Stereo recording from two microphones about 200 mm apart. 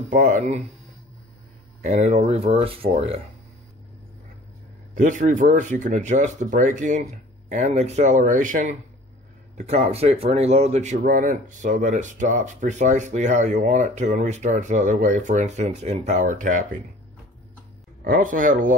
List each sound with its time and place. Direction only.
0.1 s a man's voice: 40° right (ahead or behind)
1.8 s a man's voice: 35° right (ahead or behind)
4.9 s a man's voice: 40° right (ahead or behind)
18.0 s a man's voice: 45° right (ahead or behind)